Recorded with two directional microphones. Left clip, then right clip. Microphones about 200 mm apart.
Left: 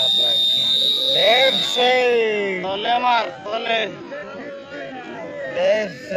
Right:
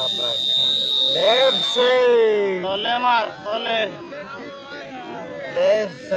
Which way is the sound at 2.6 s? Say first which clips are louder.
Left 1 dB; 10° left (ahead or behind).